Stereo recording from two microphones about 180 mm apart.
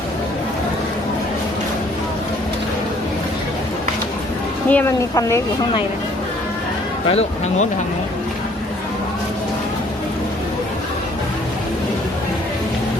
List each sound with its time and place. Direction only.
4.7 s speech: 10° left (ahead or behind)
7.1 s speech: 35° left (ahead or behind)